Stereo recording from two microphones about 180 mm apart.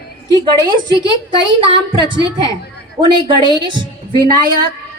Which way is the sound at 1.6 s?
25° right (ahead or behind).